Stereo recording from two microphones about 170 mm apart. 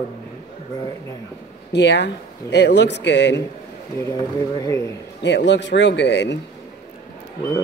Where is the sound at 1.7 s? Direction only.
90° left.